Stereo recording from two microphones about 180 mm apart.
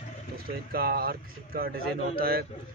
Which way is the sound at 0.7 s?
55° right (ahead or behind).